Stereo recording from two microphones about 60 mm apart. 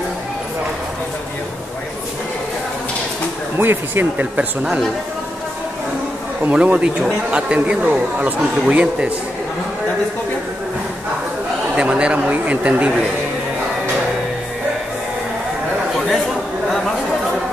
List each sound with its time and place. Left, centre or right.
3.5 s speech: right
6.4 s speech: right
11.7 s speech: centre